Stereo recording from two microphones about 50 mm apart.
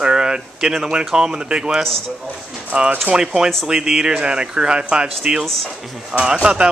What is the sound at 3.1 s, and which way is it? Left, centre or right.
Speech, centre.